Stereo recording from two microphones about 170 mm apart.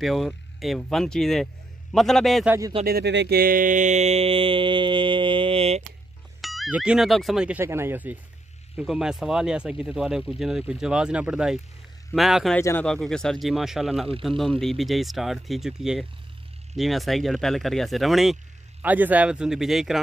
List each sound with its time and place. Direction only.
0.0 s speech: centre (ahead or behind)
2.4 s speech: 15° right (ahead or behind)
2.8 s speech: 65° right (ahead or behind); by 5.8 s 35° right (ahead or behind)
6.4 s speech: centre (ahead or behind)
12.5 s speech: 10° left (ahead or behind)